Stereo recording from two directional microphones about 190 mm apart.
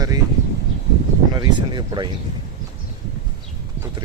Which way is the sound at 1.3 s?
25° right (ahead or behind).